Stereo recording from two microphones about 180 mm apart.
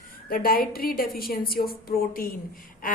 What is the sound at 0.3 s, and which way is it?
A woman's voice, 55° left (ahead or behind).